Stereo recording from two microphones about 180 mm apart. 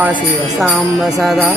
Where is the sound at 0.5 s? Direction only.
Centre (ahead or behind).